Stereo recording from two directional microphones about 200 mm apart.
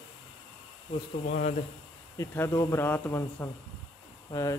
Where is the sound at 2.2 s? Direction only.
10° left (ahead or behind).